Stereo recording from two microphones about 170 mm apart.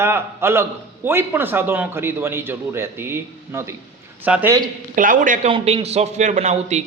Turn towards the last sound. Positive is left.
turn(degrees=-40)  # may be behind; listen again after turning